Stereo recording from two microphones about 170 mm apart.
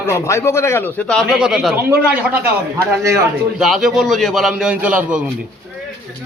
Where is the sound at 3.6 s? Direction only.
Centre (ahead or behind).